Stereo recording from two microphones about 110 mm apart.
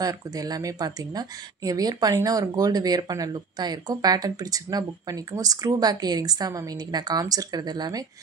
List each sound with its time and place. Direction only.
0.0 s speech: 35° right (ahead or behind)